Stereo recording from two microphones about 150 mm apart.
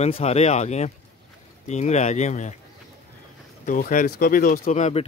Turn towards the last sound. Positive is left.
turn(degrees=45)  # may be behind; listen again after turning